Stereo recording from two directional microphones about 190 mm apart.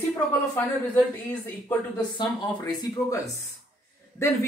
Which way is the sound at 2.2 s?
20° left (ahead or behind).